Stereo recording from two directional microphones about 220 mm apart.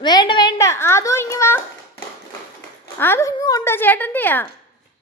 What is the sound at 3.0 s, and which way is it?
A woman's voice, 10° left (ahead or behind).